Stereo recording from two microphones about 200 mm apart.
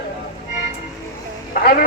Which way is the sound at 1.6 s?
45° left (ahead or behind).